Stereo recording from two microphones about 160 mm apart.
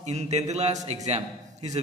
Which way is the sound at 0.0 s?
45° right (ahead or behind).